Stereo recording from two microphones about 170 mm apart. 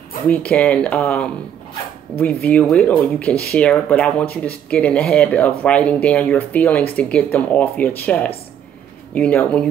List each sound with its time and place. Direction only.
0.3 s speech: 5° left (ahead or behind)